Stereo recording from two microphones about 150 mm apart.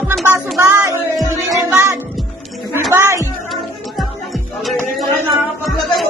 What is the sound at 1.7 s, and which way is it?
Music, 15° right (ahead or behind).